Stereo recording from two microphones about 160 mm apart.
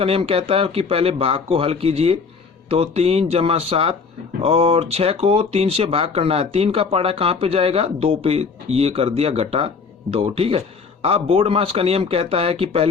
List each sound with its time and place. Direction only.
0.0 s speech: 35° right (ahead or behind)